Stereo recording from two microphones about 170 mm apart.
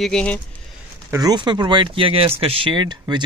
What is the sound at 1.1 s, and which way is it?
Speech, 25° right (ahead or behind).